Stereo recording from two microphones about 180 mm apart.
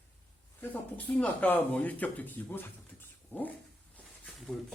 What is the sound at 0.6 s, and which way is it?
Speech, 10° left (ahead or behind).